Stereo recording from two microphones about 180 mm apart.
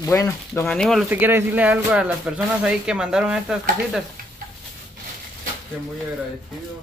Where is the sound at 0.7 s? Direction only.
Centre (ahead or behind).